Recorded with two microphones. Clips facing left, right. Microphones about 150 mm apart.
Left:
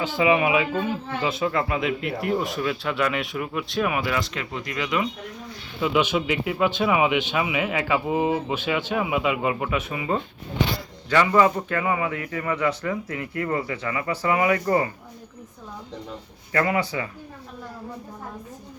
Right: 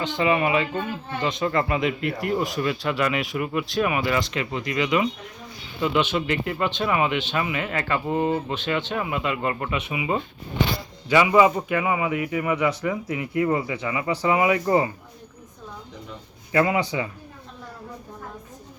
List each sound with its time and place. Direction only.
0.0 s speech: 5° left (ahead or behind)
5.8 s speech: 10° left (ahead or behind)
9.9 s a man's voice: 10° right (ahead or behind)
16.5 s speech: 20° right (ahead or behind)